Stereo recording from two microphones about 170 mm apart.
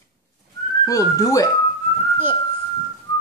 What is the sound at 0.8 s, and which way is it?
Speech, 20° left (ahead or behind).